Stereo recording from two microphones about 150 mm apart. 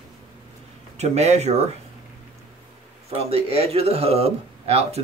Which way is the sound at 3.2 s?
40° right (ahead or behind).